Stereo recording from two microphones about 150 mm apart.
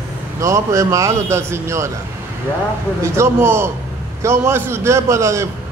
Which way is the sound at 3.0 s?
15° right (ahead or behind).